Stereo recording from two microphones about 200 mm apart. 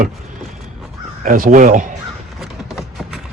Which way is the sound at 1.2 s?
40° right (ahead or behind).